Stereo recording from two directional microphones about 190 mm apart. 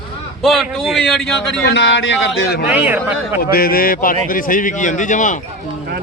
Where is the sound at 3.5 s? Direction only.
50° left (ahead or behind).